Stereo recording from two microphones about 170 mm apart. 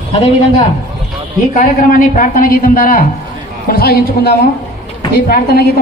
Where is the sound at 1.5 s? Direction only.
50° left (ahead or behind).